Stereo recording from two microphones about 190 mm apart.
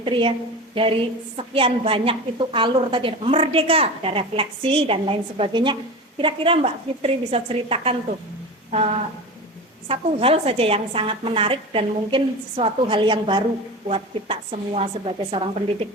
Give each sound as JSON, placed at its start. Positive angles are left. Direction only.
{"t": 0.0, "sound": "a woman's voice", "side_deg": -25}
{"t": 9.9, "sound": "a woman's voice", "side_deg": -30}